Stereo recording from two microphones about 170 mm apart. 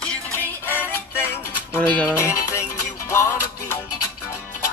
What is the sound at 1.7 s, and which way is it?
Speech, 10° left (ahead or behind).